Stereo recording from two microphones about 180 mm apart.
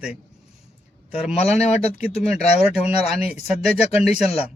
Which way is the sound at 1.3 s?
35° left (ahead or behind).